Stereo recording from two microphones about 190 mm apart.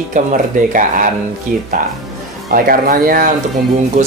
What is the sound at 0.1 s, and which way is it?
Speech, 45° right (ahead or behind).